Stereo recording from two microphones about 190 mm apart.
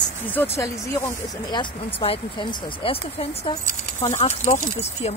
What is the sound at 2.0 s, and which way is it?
Speech, 25° left (ahead or behind).